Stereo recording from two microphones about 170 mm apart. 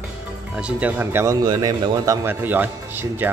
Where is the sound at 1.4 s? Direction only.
25° right (ahead or behind).